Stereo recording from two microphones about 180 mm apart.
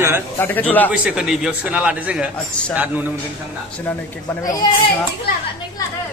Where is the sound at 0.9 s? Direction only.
5° right (ahead or behind).